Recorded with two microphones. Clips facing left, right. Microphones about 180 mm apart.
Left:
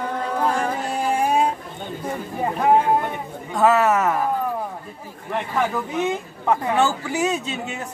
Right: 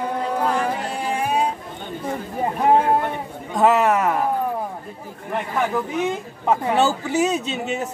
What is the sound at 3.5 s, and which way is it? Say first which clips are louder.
Speech: even; 20° right (ahead or behind).